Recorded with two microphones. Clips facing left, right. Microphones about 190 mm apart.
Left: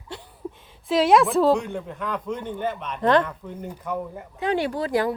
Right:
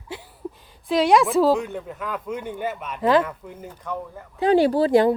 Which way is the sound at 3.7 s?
10° left (ahead or behind).